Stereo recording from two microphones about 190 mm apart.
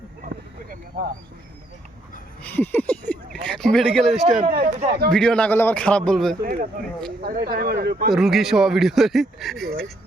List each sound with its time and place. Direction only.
2.4 s speech: 10° left (ahead or behind)
4.4 s speech: 45° right (ahead or behind)
5.1 s speech: 5° left (ahead or behind)
6.4 s speech: 50° right (ahead or behind)
8.1 s speech: centre (ahead or behind)